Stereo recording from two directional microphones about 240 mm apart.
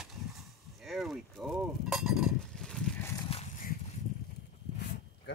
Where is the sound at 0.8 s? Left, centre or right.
Centre.